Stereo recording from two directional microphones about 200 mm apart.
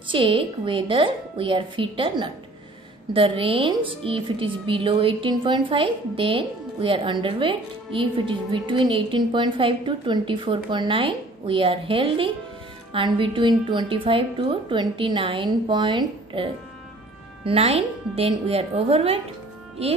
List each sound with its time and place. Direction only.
0.1 s a woman's voice: 25° right (ahead or behind)